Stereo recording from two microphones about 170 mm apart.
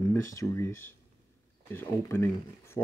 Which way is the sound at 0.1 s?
15° left (ahead or behind).